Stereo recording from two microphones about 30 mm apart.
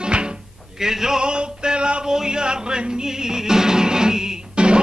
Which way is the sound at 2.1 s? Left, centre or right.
Right.